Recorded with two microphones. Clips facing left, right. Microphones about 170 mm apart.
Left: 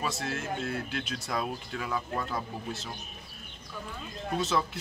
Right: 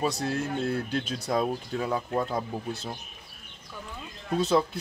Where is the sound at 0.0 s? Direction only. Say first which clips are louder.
Right 5 dB; 35° right (ahead or behind).